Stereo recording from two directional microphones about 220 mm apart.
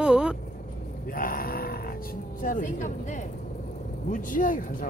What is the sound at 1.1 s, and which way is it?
Grunt, 40° left (ahead or behind).